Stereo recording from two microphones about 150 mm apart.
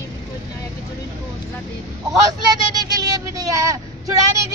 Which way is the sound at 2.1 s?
25° right (ahead or behind).